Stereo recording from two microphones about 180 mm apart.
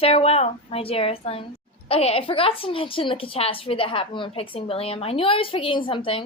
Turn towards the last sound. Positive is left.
turn(degrees=30)  # may be behind; listen again after turning